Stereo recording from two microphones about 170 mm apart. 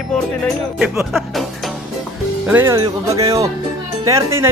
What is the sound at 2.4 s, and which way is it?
Speech, 10° right (ahead or behind).